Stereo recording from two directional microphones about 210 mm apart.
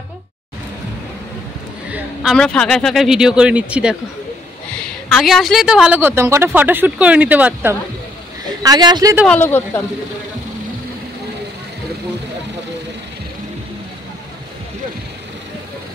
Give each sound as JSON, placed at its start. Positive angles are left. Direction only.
{"t": 1.9, "sound": "a sound", "side_deg": -5}
{"t": 2.3, "sound": "speech", "side_deg": 5}
{"t": 5.1, "sound": "speech", "side_deg": 0}
{"t": 8.6, "sound": "speech", "side_deg": -20}
{"t": 9.3, "sound": "speech", "side_deg": 10}